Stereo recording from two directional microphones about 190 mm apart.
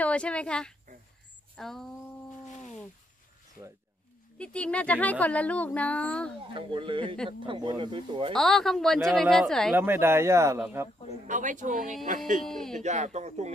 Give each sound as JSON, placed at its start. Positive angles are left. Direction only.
{"t": 0.0, "sound": "speech", "side_deg": 5}
{"t": 4.4, "sound": "a woman's voice", "side_deg": 5}
{"t": 6.5, "sound": "speech", "side_deg": -25}
{"t": 8.3, "sound": "speech", "side_deg": 0}
{"t": 9.8, "sound": "speech", "side_deg": -10}
{"t": 11.2, "sound": "speech", "side_deg": -40}
{"t": 12.4, "sound": "speech", "side_deg": 0}
{"t": 12.8, "sound": "speech", "side_deg": -40}